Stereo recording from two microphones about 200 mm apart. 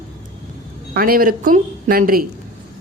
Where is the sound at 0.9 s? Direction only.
45° right (ahead or behind).